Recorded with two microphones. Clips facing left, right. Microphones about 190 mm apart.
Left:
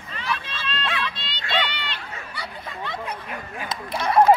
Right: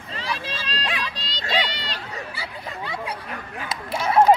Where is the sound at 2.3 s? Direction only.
10° right (ahead or behind).